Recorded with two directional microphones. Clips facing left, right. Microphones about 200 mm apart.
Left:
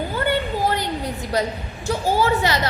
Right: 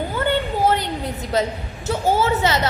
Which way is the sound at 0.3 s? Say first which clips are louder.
Right 3 dB; 20° right (ahead or behind).